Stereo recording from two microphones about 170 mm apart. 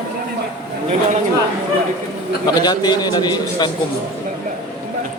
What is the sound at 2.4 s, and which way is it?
A man's voice, 25° left (ahead or behind).